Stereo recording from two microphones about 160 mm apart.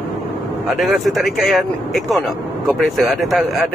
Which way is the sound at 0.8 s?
Centre (ahead or behind).